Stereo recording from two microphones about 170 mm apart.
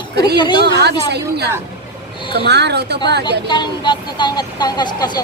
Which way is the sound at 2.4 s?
80° right.